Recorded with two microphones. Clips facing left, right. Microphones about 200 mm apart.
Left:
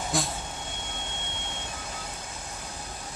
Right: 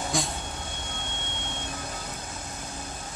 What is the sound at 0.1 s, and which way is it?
Vehicle, centre (ahead or behind).